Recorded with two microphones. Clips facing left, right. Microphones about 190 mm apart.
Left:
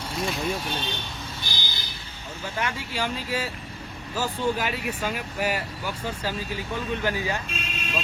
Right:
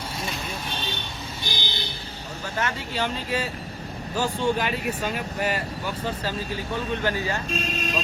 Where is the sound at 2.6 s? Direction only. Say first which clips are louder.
Right 2 dB; 10° left (ahead or behind).